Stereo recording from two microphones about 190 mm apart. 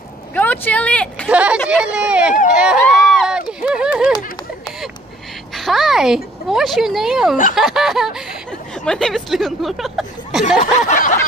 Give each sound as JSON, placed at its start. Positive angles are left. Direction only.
{"t": 0.3, "sound": "speech", "side_deg": 10}
{"t": 1.3, "sound": "a woman's voice", "side_deg": -5}
{"t": 5.5, "sound": "a woman's voice", "side_deg": 0}
{"t": 10.6, "sound": "a sound", "side_deg": 40}